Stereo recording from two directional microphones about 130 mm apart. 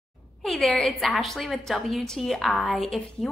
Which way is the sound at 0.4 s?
Centre (ahead or behind).